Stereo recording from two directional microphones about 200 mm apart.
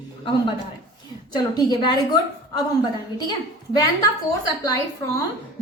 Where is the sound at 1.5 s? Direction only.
20° left (ahead or behind).